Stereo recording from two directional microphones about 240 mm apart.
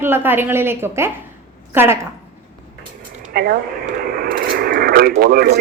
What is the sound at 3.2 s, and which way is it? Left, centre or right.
Radio, right.